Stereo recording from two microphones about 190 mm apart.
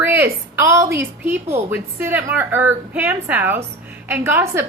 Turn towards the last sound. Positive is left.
turn(degrees=-10)  # may be behind; listen again after turning